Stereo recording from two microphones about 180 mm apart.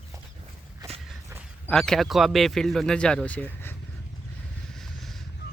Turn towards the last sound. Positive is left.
turn(degrees=10)  # may be behind; listen again after turning